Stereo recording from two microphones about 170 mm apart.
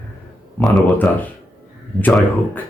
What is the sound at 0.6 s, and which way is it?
Speech, 10° left (ahead or behind).